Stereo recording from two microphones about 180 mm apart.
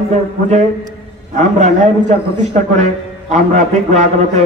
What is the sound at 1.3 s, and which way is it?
Speech, 40° right (ahead or behind).